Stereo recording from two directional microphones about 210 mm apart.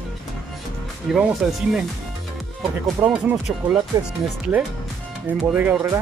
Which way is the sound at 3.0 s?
Centre (ahead or behind).